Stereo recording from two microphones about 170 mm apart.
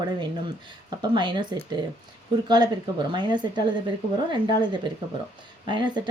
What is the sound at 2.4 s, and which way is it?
Speech, 25° right (ahead or behind).